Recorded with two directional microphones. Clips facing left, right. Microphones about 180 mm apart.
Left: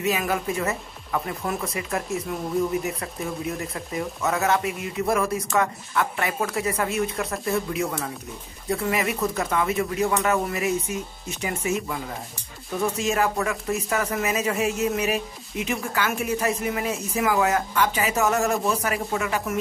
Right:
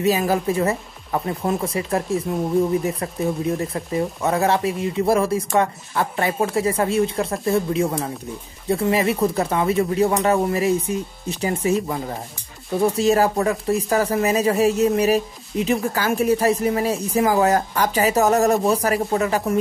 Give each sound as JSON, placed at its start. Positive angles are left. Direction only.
{"t": 0.0, "sound": "speech", "side_deg": -35}